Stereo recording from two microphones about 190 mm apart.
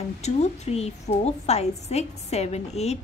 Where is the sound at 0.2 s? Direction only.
35° left (ahead or behind).